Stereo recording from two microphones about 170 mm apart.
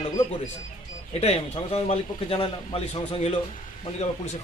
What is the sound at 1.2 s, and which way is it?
A man's voice, 40° left (ahead or behind).